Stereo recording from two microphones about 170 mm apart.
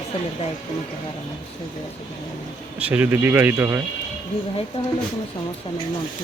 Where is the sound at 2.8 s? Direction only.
10° right (ahead or behind).